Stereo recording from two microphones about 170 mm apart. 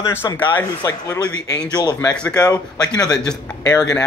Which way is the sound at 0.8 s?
20° left (ahead or behind).